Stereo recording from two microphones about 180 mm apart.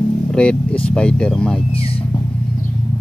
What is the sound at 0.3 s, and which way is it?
Speech, 5° left (ahead or behind).